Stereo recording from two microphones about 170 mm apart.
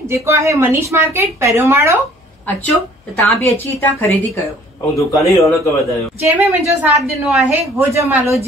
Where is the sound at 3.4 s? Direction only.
15° left (ahead or behind).